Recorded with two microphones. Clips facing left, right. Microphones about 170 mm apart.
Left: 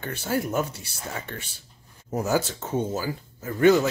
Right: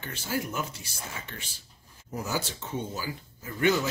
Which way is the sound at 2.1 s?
45° left (ahead or behind).